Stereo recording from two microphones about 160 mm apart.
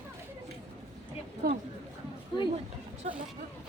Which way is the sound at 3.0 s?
45° right (ahead or behind).